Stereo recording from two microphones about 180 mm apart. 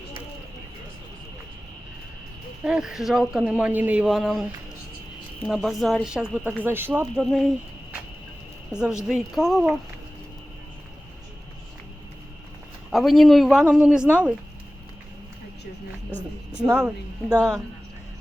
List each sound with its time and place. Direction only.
2.6 s speech: 5° right (ahead or behind)
5.5 s speech: centre (ahead or behind)
7.2 s speech: centre (ahead or behind)
8.7 s speech: 5° right (ahead or behind)
12.9 s speech: centre (ahead or behind)
16.1 s speech: 10° left (ahead or behind)
16.6 s speech: 5° right (ahead or behind)